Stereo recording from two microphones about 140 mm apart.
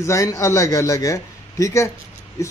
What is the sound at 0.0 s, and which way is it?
Speech, 20° left (ahead or behind).